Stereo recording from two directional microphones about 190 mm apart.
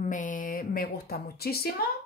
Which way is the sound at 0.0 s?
45° left (ahead or behind).